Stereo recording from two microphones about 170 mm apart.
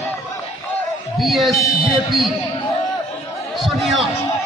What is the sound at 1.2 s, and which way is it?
Speech, centre (ahead or behind).